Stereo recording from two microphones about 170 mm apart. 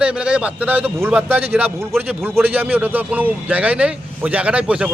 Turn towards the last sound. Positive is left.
turn(degrees=-10)  # may be behind; listen again after turning